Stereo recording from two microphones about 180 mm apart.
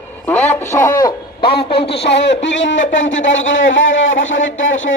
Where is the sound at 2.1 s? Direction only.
80° left.